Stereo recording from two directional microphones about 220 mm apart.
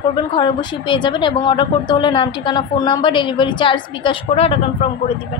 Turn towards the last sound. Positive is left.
turn(degrees=25)  # may be behind; listen again after turning